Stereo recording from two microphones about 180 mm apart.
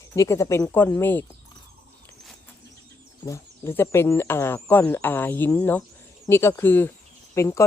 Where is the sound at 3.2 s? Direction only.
15° left (ahead or behind).